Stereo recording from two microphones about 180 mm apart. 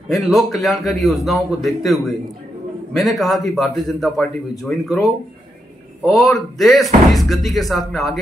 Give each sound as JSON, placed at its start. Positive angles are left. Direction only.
{"t": 0.1, "sound": "a man's voice", "side_deg": 0}